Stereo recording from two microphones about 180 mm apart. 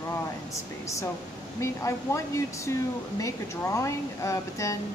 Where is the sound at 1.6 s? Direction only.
15° left (ahead or behind).